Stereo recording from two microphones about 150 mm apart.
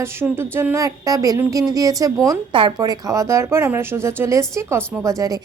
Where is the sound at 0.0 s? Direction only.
15° right (ahead or behind).